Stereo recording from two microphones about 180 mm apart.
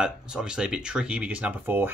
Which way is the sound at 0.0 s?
5° right (ahead or behind).